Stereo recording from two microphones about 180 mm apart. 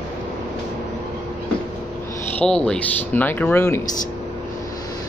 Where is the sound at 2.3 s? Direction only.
5° left (ahead or behind).